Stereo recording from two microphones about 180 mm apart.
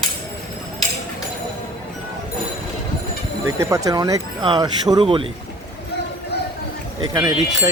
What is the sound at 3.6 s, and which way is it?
Speech, 20° right (ahead or behind).